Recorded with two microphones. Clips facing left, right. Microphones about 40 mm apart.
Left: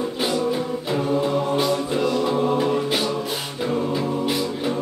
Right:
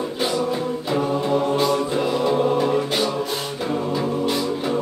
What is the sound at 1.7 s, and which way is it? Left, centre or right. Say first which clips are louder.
Music: right 1 dB; centre.